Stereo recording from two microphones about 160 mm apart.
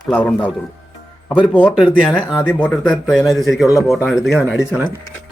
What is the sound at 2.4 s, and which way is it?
Speech, 10° left (ahead or behind).